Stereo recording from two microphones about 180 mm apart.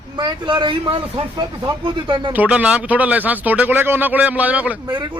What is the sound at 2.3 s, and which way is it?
A man's voice, 5° right (ahead or behind).